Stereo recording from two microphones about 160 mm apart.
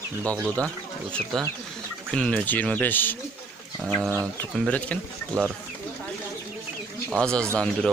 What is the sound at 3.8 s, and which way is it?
Speech, centre (ahead or behind).